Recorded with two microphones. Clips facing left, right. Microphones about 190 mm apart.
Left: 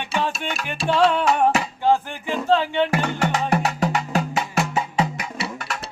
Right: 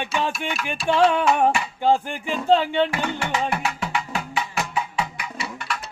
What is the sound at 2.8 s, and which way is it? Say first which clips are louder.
Music: left 4 dB; 40° left (ahead or behind).